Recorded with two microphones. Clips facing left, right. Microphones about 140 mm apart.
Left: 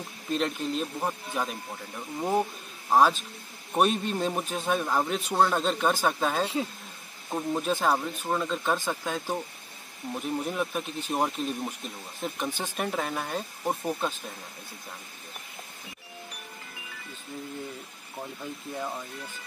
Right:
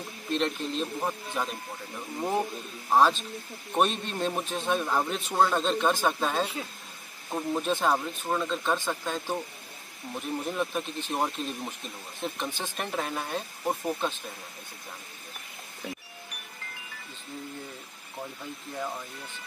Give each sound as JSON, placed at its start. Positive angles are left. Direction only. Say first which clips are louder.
{"t": 0.3, "sound": "speech", "louder": "left 1 dB", "side_deg": 5}
{"t": 2.9, "sound": "speech", "louder": "left 1 dB", "side_deg": 10}